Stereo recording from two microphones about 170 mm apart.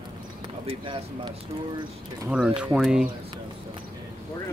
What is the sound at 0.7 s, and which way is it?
Speech, 30° right (ahead or behind).